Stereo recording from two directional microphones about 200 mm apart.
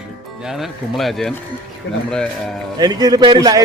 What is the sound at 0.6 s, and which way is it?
Speech, centre (ahead or behind).